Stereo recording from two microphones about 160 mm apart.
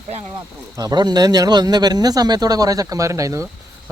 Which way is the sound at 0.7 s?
25° right (ahead or behind).